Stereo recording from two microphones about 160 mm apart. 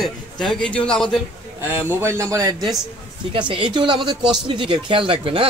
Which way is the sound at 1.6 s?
15° right (ahead or behind).